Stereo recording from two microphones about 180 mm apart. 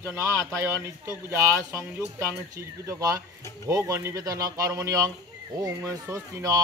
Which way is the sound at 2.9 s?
20° right (ahead or behind).